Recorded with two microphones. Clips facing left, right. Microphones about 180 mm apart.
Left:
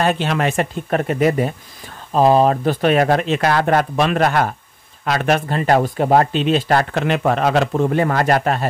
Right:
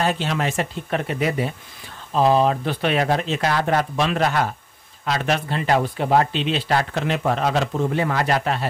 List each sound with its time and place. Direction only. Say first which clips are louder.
0.0 s speech: left 4 dB; 60° left (ahead or behind)